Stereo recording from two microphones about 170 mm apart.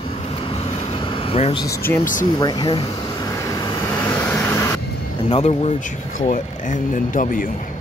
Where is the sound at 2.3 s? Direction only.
25° left (ahead or behind).